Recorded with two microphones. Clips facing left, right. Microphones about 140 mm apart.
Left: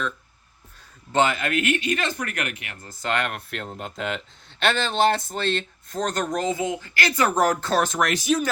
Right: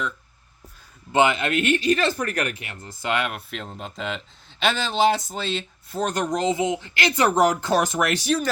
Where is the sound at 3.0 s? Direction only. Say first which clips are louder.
Right 1 dB; 10° right (ahead or behind).